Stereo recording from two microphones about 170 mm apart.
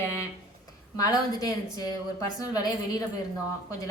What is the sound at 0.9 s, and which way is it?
Speech, 20° left (ahead or behind).